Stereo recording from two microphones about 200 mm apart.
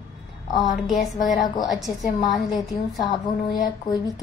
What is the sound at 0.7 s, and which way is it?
A woman's voice, centre (ahead or behind).